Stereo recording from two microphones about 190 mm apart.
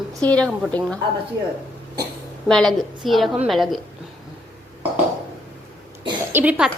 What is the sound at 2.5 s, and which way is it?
A woman's voice, 5° left (ahead or behind).